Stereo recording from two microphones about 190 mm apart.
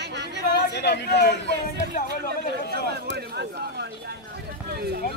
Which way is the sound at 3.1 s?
55° right (ahead or behind).